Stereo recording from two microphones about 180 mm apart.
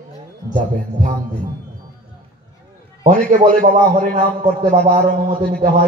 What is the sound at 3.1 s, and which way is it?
A man's voice, 45° right (ahead or behind).